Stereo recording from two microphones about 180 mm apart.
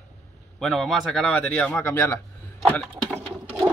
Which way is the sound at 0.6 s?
Centre (ahead or behind).